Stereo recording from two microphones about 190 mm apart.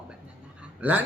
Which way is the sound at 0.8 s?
10° right (ahead or behind).